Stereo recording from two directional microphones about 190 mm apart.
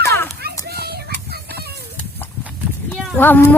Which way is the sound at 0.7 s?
55° right (ahead or behind).